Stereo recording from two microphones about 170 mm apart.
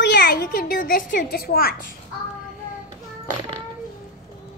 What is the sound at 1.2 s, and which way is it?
Speech, 65° left (ahead or behind).